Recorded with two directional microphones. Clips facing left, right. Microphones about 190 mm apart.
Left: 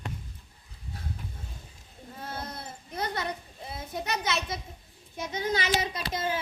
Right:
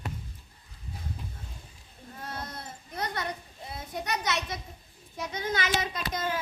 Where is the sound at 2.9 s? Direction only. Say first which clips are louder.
Left 1 dB; 30° left (ahead or behind).